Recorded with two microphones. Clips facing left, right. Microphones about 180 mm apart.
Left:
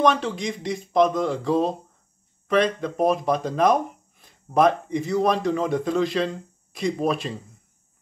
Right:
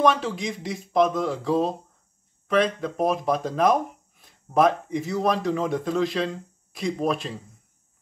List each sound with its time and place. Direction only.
0.0 s speech: 5° right (ahead or behind)